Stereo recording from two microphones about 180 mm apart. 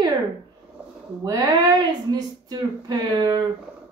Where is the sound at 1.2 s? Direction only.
20° right (ahead or behind).